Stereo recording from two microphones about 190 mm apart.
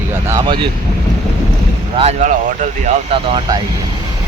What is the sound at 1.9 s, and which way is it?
Speech, 30° right (ahead or behind).